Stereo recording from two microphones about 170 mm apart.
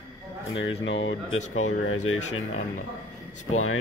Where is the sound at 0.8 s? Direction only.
90° left.